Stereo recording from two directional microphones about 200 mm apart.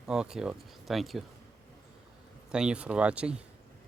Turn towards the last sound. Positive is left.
turn(degrees=-5)  # may be behind; listen again after turning